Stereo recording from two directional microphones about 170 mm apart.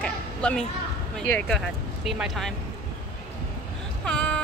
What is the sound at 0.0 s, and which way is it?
Children playing, 5° left (ahead or behind).